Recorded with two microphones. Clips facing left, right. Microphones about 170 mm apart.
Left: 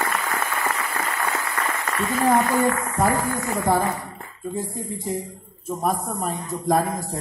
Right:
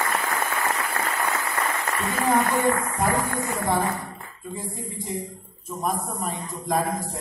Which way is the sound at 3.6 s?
40° left (ahead or behind).